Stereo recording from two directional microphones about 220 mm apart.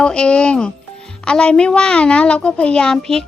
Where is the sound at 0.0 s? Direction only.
5° left (ahead or behind).